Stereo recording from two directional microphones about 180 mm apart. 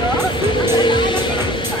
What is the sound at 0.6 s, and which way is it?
Music, 25° left (ahead or behind).